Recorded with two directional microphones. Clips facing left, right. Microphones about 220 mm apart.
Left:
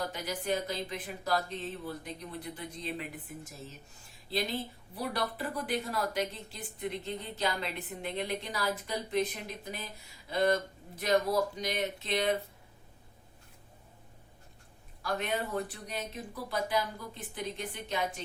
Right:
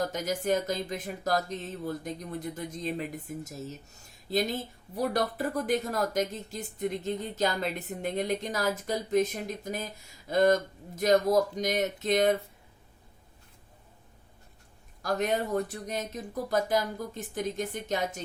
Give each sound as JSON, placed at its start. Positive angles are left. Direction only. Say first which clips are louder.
{"t": 0.0, "sound": "speech", "louder": "right 6 dB", "side_deg": -45}
{"t": 15.0, "sound": "speech", "louder": "right 5 dB", "side_deg": -40}